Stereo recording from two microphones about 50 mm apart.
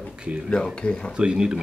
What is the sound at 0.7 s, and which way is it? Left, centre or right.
Speech, centre.